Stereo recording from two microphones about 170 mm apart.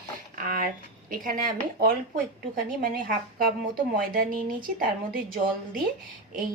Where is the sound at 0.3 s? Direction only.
60° right (ahead or behind).